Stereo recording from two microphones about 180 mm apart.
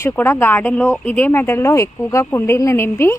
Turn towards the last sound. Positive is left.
turn(degrees=15)  # may be behind; listen again after turning